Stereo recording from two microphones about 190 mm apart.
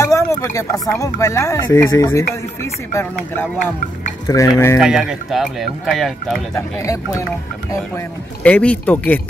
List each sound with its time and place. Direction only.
0.0 s speech: 15° left (ahead or behind)
4.7 s speech: 5° right (ahead or behind)
6.5 s speech: 15° left (ahead or behind)
8.5 s speech: 5° left (ahead or behind)